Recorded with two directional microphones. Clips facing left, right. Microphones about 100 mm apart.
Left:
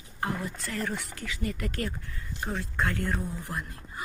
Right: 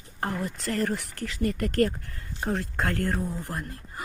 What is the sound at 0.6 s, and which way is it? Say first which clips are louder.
Speech: right 7 dB; 55° right (ahead or behind).